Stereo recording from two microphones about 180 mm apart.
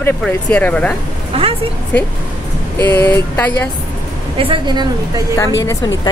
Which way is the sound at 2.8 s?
10° left (ahead or behind).